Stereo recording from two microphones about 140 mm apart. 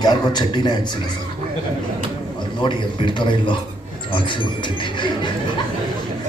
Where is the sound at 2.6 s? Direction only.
35° left (ahead or behind).